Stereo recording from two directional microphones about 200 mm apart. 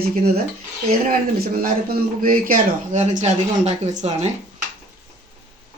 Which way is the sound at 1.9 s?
45° right (ahead or behind).